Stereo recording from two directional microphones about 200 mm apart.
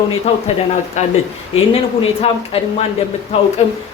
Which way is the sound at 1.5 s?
30° left (ahead or behind).